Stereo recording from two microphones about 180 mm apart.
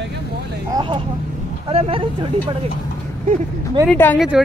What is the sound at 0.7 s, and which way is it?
Vehicle, 25° right (ahead or behind).